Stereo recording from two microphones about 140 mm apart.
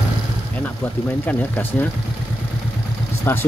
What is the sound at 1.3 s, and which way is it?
Speech, 10° left (ahead or behind).